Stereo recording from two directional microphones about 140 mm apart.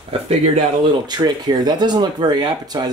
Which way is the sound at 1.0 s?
30° right (ahead or behind).